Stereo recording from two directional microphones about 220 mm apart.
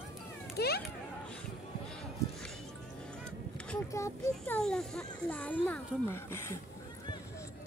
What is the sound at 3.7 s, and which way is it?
Speech, 10° left (ahead or behind).